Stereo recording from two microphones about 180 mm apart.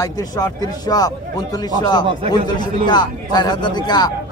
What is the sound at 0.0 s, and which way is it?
A man's voice, 20° left (ahead or behind).